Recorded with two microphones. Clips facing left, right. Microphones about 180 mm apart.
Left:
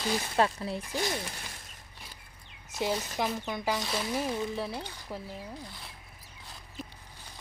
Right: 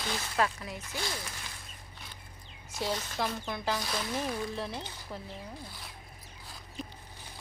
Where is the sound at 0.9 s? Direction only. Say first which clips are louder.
Left 5 dB; 20° left (ahead or behind).